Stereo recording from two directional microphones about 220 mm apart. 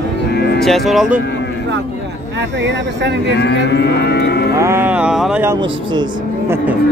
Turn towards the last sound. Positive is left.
turn(degrees=-20)  # may be behind; listen again after turning